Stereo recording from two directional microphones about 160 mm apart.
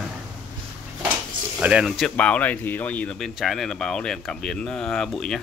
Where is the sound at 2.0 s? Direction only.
5° left (ahead or behind).